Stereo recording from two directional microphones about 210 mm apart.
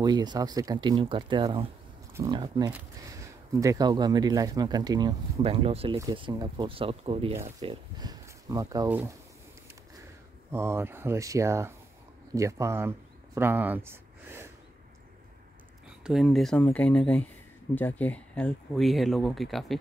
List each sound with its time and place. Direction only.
0.0 s speech: 20° right (ahead or behind)
10.5 s speech: 10° right (ahead or behind)
16.0 s speech: centre (ahead or behind)